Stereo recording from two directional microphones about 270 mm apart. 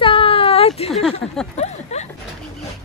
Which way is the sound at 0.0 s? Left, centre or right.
Centre.